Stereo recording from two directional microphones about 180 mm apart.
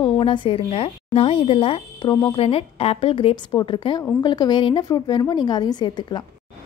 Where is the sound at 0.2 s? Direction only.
30° left (ahead or behind).